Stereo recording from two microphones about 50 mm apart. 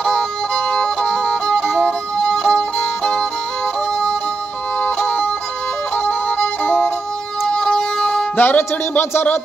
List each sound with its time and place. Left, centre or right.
0.0 s music: centre
4.8 s music: left
7.5 s music: centre
8.4 s speech: left